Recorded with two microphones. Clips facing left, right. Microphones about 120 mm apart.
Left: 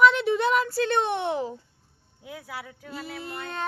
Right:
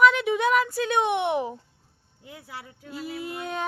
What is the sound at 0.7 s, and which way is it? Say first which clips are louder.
Female singing: even; 10° right (ahead or behind).